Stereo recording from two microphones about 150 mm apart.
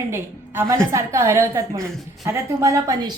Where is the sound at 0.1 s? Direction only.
15° right (ahead or behind).